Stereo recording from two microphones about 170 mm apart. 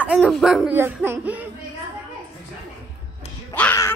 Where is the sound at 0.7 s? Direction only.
15° right (ahead or behind).